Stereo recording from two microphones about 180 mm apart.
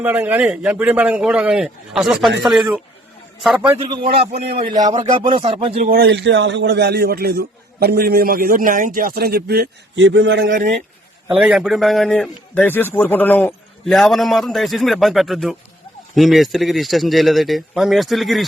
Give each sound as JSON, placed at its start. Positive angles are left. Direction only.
{"t": 0.0, "sound": "a man's voice", "side_deg": -10}
{"t": 4.4, "sound": "a man's voice", "side_deg": -60}
{"t": 4.7, "sound": "speech", "side_deg": -20}
{"t": 5.9, "sound": "a man's voice", "side_deg": -70}
{"t": 10.5, "sound": "speech", "side_deg": -50}
{"t": 11.3, "sound": "a man's voice", "side_deg": -5}